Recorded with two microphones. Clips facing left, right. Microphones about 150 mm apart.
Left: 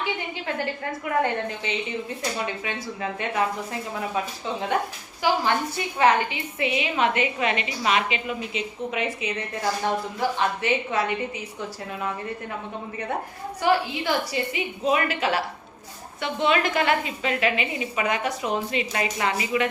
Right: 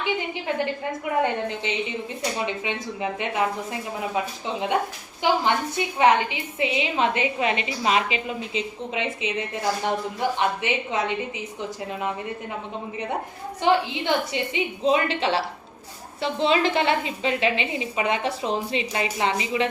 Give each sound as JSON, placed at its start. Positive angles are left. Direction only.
{"t": 0.0, "sound": "a sound", "side_deg": -20}
{"t": 1.2, "sound": "a woman's voice", "side_deg": -20}
{"t": 5.2, "sound": "a woman's voice", "side_deg": -20}
{"t": 13.6, "sound": "a woman's voice", "side_deg": -20}